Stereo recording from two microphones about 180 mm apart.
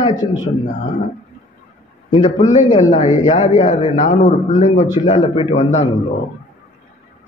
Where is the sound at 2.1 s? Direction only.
40° left (ahead or behind).